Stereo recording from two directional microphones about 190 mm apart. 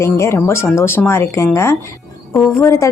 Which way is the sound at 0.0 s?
15° left (ahead or behind).